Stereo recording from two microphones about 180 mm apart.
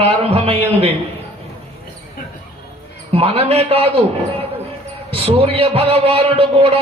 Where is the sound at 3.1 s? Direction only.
35° right (ahead or behind).